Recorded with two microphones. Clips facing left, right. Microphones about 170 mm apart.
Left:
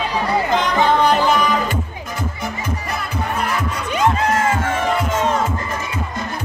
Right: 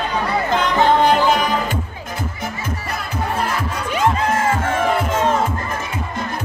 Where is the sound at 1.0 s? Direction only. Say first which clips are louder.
Even; 50° right (ahead or behind).